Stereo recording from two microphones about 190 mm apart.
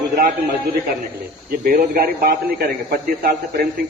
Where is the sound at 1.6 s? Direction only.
45° right (ahead or behind).